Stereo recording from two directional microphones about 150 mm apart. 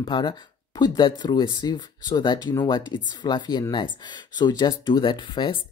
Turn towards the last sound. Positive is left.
turn(degrees=35)  # may be behind; listen again after turning